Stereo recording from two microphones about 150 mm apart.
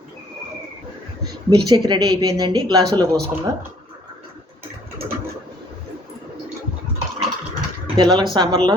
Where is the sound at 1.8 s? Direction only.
25° right (ahead or behind).